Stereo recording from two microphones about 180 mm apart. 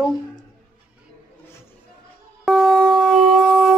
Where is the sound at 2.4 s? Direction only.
Centre (ahead or behind).